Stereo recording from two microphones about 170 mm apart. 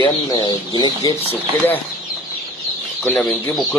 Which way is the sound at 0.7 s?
25° left (ahead or behind).